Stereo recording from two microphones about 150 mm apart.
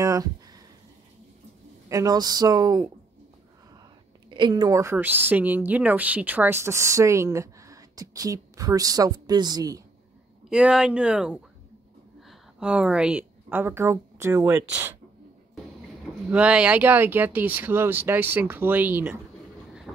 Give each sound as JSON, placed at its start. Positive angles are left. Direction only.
{"t": 0.0, "sound": "a sound", "side_deg": -25}
{"t": 1.9, "sound": "a woman's voice", "side_deg": -20}
{"t": 4.3, "sound": "a woman's voice", "side_deg": -30}
{"t": 10.5, "sound": "a woman's voice", "side_deg": -5}
{"t": 16.3, "sound": "speech", "side_deg": -10}